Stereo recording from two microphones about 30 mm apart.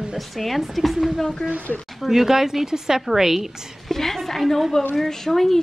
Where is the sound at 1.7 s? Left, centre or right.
Left.